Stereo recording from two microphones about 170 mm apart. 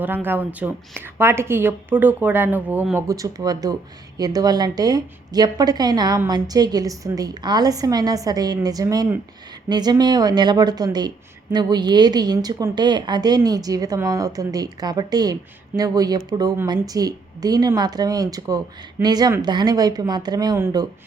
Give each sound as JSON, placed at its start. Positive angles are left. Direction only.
{"t": 0.0, "sound": "a woman's voice", "side_deg": -10}